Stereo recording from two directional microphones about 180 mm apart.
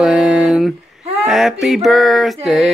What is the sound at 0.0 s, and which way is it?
Female singing, 5° right (ahead or behind).